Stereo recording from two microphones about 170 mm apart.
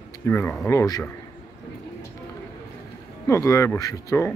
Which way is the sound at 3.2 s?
15° left (ahead or behind).